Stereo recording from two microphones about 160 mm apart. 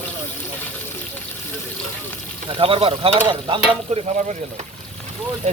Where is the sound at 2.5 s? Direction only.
35° right (ahead or behind).